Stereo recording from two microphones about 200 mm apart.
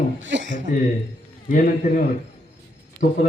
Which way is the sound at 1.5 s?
45° left (ahead or behind).